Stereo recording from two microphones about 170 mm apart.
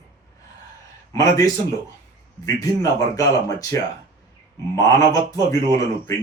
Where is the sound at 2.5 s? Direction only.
20° left (ahead or behind).